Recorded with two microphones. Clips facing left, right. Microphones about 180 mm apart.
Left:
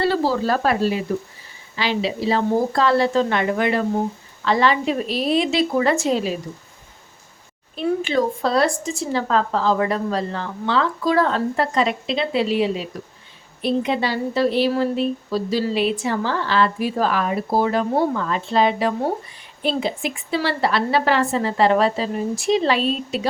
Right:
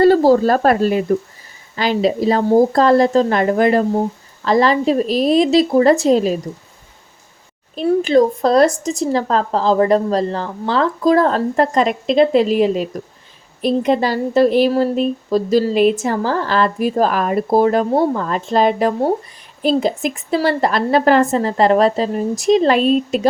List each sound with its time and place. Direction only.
0.0 s a woman's voice: 45° right (ahead or behind)
7.8 s a woman's voice: 40° right (ahead or behind)